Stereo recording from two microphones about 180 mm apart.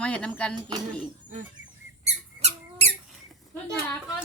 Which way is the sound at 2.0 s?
35° right (ahead or behind).